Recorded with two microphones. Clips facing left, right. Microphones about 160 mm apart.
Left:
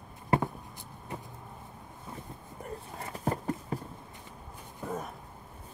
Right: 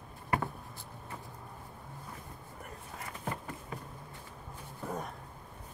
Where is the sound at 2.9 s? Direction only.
35° left (ahead or behind).